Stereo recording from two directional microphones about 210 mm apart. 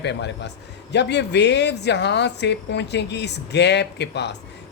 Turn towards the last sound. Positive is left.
turn(degrees=55)  # may be behind; listen again after turning